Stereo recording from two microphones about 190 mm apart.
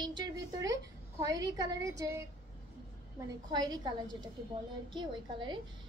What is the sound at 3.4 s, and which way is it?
A woman's voice, 20° right (ahead or behind).